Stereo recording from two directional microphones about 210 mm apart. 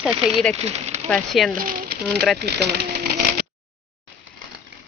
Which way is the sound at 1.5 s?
40° right (ahead or behind).